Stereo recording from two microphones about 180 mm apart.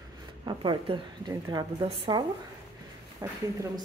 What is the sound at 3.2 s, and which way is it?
Speech, 20° right (ahead or behind).